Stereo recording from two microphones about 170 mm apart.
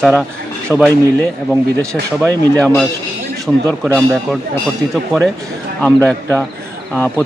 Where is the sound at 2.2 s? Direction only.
5° left (ahead or behind).